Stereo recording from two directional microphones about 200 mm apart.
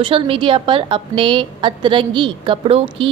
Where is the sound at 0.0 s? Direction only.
25° right (ahead or behind).